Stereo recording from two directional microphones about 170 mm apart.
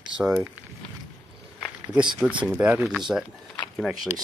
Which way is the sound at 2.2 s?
5° right (ahead or behind).